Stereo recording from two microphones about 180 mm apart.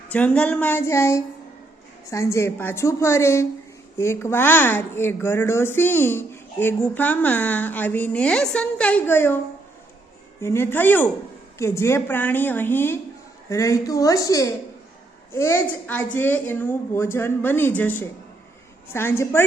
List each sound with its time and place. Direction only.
0.1 s speech: 5° left (ahead or behind)
10.4 s a woman's voice: 15° left (ahead or behind)